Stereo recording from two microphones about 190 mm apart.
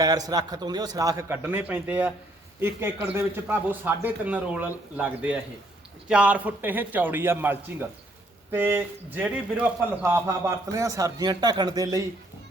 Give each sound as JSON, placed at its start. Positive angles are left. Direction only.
{"t": 0.0, "sound": "a man's voice", "side_deg": -20}